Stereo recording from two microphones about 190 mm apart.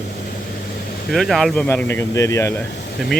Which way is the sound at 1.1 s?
Centre (ahead or behind).